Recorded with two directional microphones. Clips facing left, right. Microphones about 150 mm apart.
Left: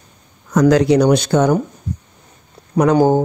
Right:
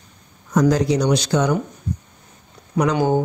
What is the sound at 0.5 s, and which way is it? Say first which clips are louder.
Speech: left 5 dB; 80° left.